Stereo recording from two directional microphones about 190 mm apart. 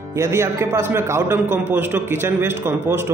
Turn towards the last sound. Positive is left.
turn(degrees=-10)  # may be behind; listen again after turning